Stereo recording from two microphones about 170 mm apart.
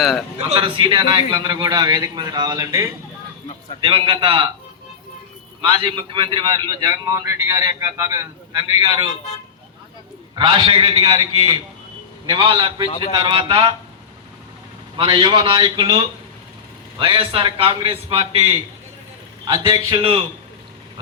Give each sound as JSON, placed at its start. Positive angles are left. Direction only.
{"t": 0.0, "sound": "speech", "side_deg": 0}
{"t": 0.5, "sound": "a man's voice", "side_deg": -30}
{"t": 5.6, "sound": "a man's voice", "side_deg": -30}
{"t": 10.3, "sound": "a man's voice", "side_deg": -30}
{"t": 14.9, "sound": "a man's voice", "side_deg": -30}
{"t": 19.5, "sound": "a man's voice", "side_deg": -20}